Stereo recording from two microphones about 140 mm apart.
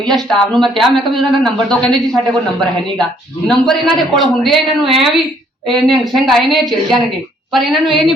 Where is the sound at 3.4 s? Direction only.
Centre (ahead or behind).